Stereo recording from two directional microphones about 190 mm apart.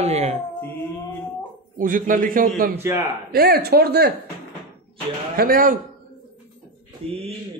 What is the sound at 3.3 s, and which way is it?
Speech, 55° right (ahead or behind).